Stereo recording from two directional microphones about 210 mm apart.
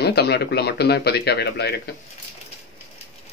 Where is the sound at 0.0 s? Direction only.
50° left (ahead or behind).